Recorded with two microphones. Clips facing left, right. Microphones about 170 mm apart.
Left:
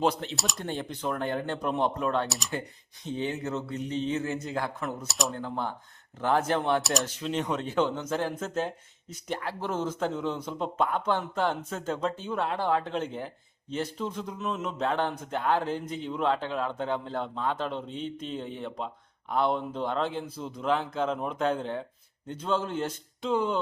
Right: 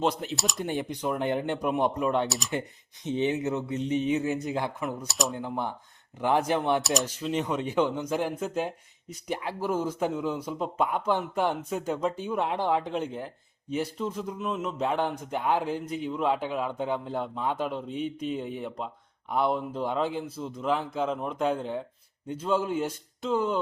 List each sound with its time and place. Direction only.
0.0 s a man's voice: centre (ahead or behind)
0.6 s speech: 15° right (ahead or behind)
2.5 s speech: 20° right (ahead or behind)
5.0 s a man's voice: centre (ahead or behind)
5.4 s speech: 15° right (ahead or behind)
6.8 s a man's voice: centre (ahead or behind)